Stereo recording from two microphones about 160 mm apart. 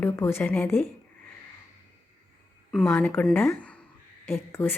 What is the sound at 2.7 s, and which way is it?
A woman's voice, 5° left (ahead or behind).